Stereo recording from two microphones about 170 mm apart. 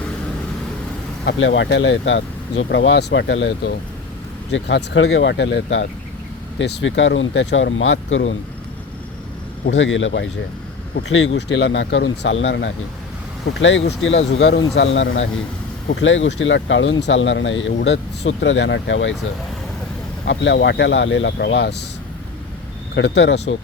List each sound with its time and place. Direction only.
1.2 s speech: 90° left
9.6 s speech: 90° left
20.2 s speech: 90° left
23.0 s speech: 90° left